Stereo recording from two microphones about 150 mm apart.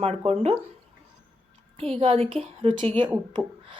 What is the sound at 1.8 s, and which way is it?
Speech, 40° right (ahead or behind).